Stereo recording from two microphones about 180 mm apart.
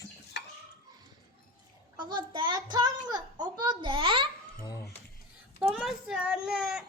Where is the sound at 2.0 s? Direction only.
25° right (ahead or behind).